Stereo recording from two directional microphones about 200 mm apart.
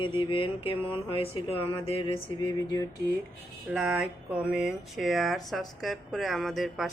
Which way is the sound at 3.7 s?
5° right (ahead or behind).